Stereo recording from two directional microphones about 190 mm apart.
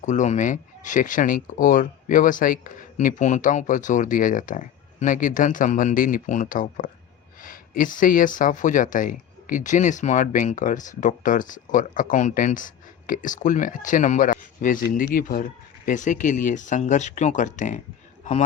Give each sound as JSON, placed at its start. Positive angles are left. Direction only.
{"t": 0.0, "sound": "speech", "side_deg": 40}